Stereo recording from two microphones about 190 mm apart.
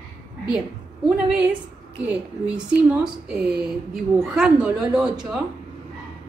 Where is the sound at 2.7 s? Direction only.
5° right (ahead or behind).